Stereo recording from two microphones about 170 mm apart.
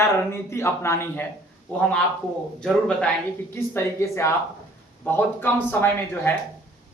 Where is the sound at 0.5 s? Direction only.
15° left (ahead or behind).